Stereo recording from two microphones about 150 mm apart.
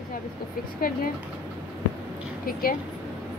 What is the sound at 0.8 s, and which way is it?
Speech, 75° left (ahead or behind).